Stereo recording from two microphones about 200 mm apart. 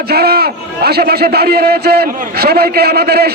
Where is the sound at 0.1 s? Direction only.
50° right (ahead or behind).